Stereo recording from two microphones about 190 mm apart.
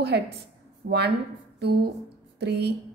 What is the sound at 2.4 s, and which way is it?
Speech, 60° right (ahead or behind).